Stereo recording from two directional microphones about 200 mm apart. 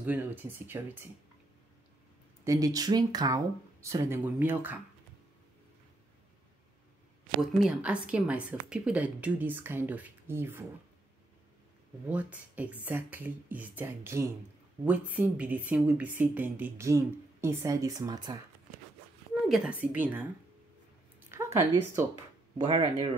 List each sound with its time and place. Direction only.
0.0 s speech: 10° right (ahead or behind)
2.4 s speech: 15° right (ahead or behind)
7.6 s speech: 5° right (ahead or behind)
12.1 s speech: 10° right (ahead or behind)
19.8 s speech: 10° right (ahead or behind)
21.3 s speech: 15° right (ahead or behind)